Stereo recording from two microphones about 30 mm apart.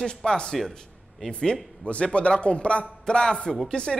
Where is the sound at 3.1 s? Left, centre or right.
Left.